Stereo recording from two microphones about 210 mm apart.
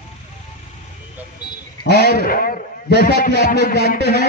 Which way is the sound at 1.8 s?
50° left (ahead or behind).